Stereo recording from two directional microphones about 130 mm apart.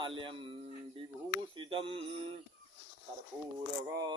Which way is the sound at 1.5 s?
40° right (ahead or behind).